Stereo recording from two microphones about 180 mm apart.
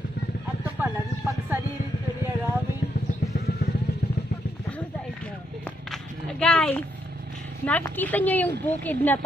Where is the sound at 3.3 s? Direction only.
60° left (ahead or behind).